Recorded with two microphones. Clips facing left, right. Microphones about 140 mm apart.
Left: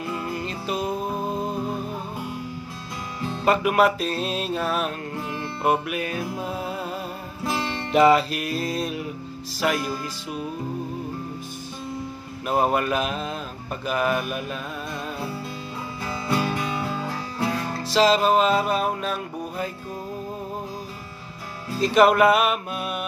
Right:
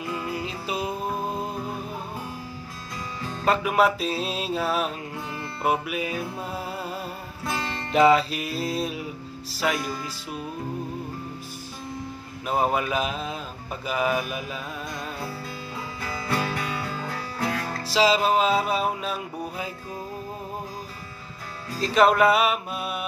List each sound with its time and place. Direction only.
0.1 s music: 5° right (ahead or behind)
3.4 s music: centre (ahead or behind)
7.5 s music: 20° left (ahead or behind)
7.9 s music: 5° left (ahead or behind)
12.4 s music: centre (ahead or behind)
16.0 s music: 20° left (ahead or behind)
17.8 s music: 5° right (ahead or behind)
21.7 s music: 5° left (ahead or behind)